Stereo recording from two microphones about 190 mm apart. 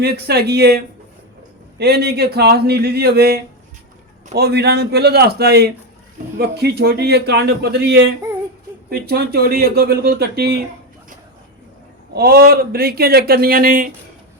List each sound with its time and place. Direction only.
0.0 s a man's voice: 55° right (ahead or behind)
1.8 s a man's voice: 55° right (ahead or behind)
12.1 s speech: 55° right (ahead or behind)